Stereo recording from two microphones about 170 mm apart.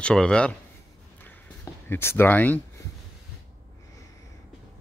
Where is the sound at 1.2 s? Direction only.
15° left (ahead or behind).